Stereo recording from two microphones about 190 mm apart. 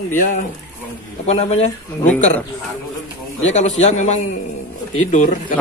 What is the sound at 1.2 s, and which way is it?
Speech, 35° left (ahead or behind).